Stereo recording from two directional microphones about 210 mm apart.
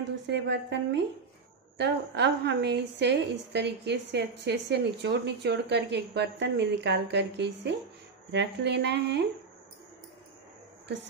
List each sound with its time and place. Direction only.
0.3 s a woman's voice: 55° right (ahead or behind)